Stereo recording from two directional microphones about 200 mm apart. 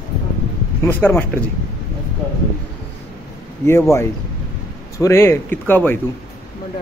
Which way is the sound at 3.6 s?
15° left (ahead or behind).